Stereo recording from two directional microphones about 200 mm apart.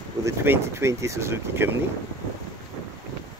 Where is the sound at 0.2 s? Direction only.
15° right (ahead or behind).